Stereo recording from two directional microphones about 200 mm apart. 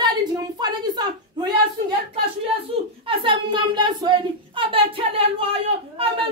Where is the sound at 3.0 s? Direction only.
25° right (ahead or behind).